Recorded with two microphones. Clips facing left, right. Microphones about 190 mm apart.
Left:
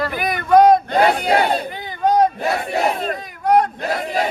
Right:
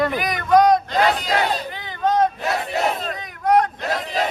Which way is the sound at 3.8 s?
55° left (ahead or behind).